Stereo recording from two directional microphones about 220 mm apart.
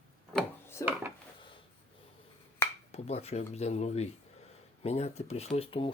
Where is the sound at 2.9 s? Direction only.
30° left (ahead or behind).